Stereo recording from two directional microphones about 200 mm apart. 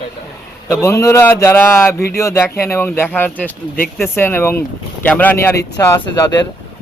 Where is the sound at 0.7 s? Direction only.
15° left (ahead or behind).